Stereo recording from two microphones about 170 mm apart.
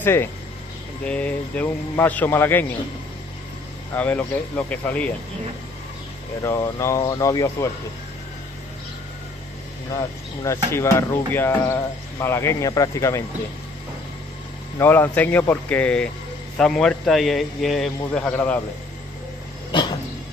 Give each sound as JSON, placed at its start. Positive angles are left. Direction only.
{"t": 0.0, "sound": "speech", "side_deg": 15}
{"t": 3.9, "sound": "speech", "side_deg": 10}
{"t": 6.4, "sound": "speech", "side_deg": 15}
{"t": 9.9, "sound": "speech", "side_deg": 20}
{"t": 14.8, "sound": "a man's voice", "side_deg": 10}